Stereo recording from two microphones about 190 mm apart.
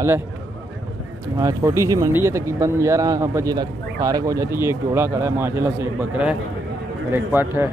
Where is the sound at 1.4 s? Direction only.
15° right (ahead or behind).